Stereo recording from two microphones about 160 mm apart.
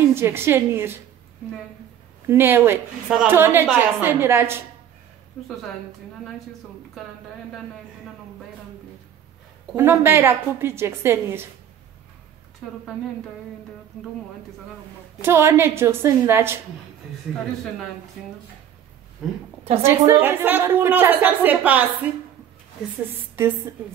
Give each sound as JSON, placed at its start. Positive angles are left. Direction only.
{"t": 0.1, "sound": "a woman's voice", "side_deg": -15}
{"t": 2.2, "sound": "a woman's voice", "side_deg": -15}
{"t": 9.8, "sound": "a woman's voice", "side_deg": -15}
{"t": 15.2, "sound": "a woman's voice", "side_deg": -15}
{"t": 19.8, "sound": "a woman's voice", "side_deg": -15}
{"t": 23.4, "sound": "a woman's voice", "side_deg": -15}